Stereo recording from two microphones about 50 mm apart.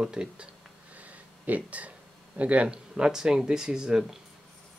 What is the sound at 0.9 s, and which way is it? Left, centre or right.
Speech, right.